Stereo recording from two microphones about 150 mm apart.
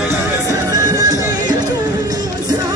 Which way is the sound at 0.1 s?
20° right (ahead or behind).